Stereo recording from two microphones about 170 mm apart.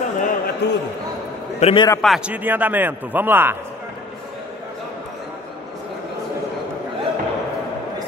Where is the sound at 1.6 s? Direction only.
35° left (ahead or behind).